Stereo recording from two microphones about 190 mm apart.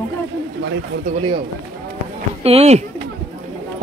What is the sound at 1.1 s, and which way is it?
Speech, 30° right (ahead or behind).